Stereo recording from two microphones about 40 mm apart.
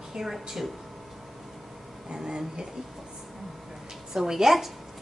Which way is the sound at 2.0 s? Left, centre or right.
Centre.